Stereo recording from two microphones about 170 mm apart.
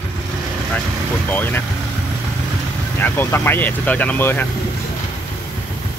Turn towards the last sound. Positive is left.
turn(degrees=10)  # may be behind; listen again after turning